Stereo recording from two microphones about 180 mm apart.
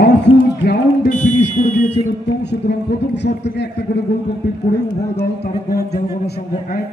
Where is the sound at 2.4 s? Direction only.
70° left (ahead or behind).